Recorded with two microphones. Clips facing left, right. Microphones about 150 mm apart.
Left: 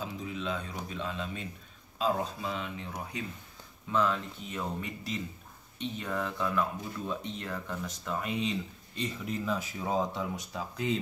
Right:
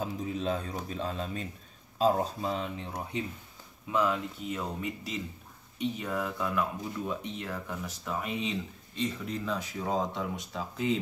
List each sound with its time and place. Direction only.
0.0 s speech: 40° right (ahead or behind)
3.9 s speech: 10° right (ahead or behind)